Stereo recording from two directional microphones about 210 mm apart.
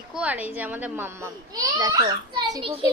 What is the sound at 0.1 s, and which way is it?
A child's voice, 5° right (ahead or behind).